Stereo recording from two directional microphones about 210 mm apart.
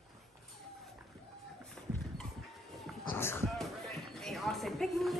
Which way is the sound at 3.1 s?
10° left (ahead or behind).